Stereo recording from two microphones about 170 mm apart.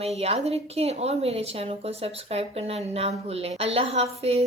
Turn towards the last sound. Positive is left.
turn(degrees=-40)  # may be behind; listen again after turning